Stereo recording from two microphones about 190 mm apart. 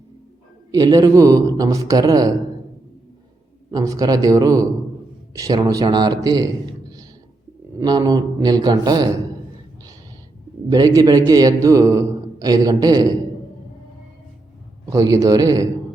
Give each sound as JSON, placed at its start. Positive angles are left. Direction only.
{"t": 0.7, "sound": "a man's voice", "side_deg": -20}
{"t": 3.7, "sound": "a man's voice", "side_deg": -20}
{"t": 7.8, "sound": "a man's voice", "side_deg": -20}
{"t": 10.7, "sound": "a man's voice", "side_deg": -20}
{"t": 14.8, "sound": "a man's voice", "side_deg": -20}